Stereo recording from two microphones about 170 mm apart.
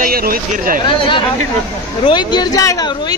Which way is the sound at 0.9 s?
30° left (ahead or behind).